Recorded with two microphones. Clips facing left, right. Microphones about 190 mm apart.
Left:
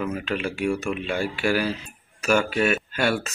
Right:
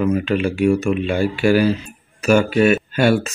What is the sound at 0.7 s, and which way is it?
Speech, 15° right (ahead or behind).